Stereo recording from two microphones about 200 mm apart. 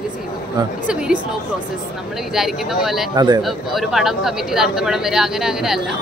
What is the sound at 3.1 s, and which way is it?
Speech, 20° right (ahead or behind).